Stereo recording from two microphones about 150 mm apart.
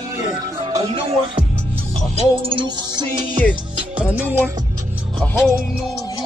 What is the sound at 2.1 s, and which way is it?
Music, 35° right (ahead or behind).